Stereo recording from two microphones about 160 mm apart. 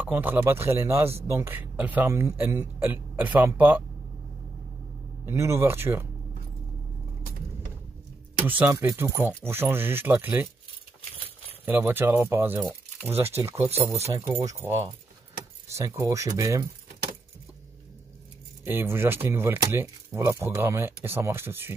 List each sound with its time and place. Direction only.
0.0 s speech: 10° right (ahead or behind)
5.2 s speech: 15° right (ahead or behind)
8.4 s speech: 10° right (ahead or behind)
11.6 s speech: 10° right (ahead or behind)
18.6 s speech: 15° right (ahead or behind)